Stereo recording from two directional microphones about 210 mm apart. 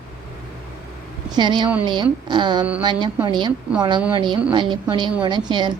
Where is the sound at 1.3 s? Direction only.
20° right (ahead or behind).